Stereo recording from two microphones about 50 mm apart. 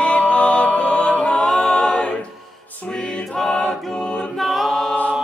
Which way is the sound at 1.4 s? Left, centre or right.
Centre.